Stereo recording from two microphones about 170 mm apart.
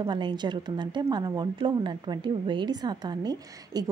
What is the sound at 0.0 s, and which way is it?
Speech, 25° right (ahead or behind).